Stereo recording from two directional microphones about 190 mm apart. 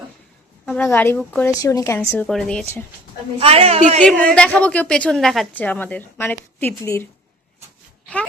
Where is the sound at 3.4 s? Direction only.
30° right (ahead or behind).